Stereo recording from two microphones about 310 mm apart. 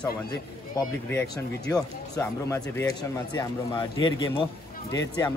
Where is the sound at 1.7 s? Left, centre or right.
Centre.